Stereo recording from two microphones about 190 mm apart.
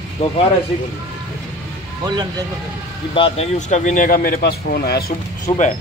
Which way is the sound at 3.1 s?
30° left (ahead or behind).